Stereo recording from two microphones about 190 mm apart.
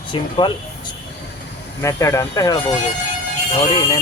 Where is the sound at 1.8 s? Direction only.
15° left (ahead or behind).